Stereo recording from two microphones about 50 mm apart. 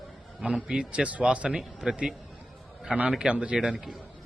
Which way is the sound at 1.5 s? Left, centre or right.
Centre.